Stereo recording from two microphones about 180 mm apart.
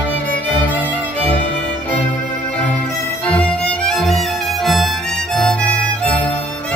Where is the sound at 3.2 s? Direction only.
5° left (ahead or behind).